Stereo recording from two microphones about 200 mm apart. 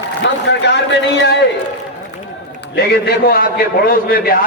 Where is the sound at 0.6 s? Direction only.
60° left (ahead or behind).